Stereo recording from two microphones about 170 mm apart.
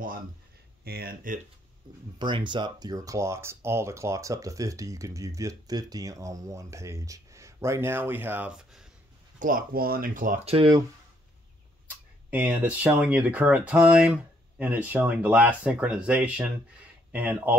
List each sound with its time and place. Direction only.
0.8 s speech: 65° right (ahead or behind)
2.1 s speech: 25° right (ahead or behind); by 8.8 s 5° right (ahead or behind)
9.4 s speech: 55° right (ahead or behind)
10.4 s speech: 35° right (ahead or behind)
12.3 s speech: 10° right (ahead or behind)